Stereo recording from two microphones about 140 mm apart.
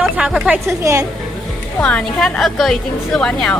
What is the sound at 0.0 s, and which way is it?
Speech, 5° right (ahead or behind).